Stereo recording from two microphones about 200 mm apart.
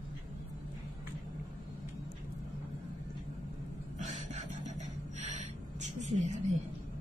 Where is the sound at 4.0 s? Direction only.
35° right (ahead or behind).